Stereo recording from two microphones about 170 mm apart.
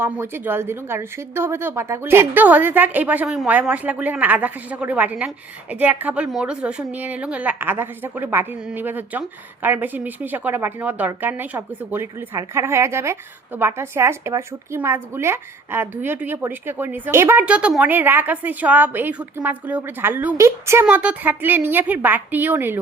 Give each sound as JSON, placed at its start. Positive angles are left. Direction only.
{"t": 0.0, "sound": "speech", "side_deg": -15}